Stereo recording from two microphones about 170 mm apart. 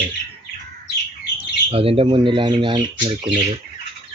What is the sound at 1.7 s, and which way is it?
Speech, 35° right (ahead or behind).